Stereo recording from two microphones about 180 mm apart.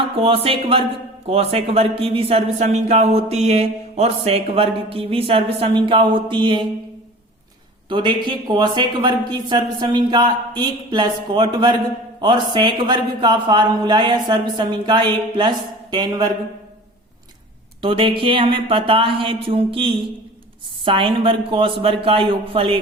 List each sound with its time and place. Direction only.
0.0 s speech: 30° right (ahead or behind)
7.9 s speech: 25° right (ahead or behind)
17.7 s speech: 30° right (ahead or behind)